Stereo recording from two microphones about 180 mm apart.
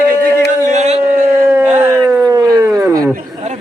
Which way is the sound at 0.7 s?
35° right (ahead or behind).